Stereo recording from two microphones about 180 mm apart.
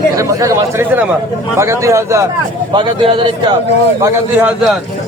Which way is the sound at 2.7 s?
25° right (ahead or behind).